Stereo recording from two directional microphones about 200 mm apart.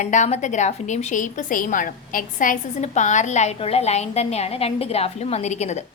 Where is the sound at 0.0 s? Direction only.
35° left (ahead or behind).